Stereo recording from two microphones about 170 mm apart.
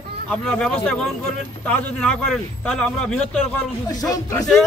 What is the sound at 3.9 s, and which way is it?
Speech, 20° left (ahead or behind).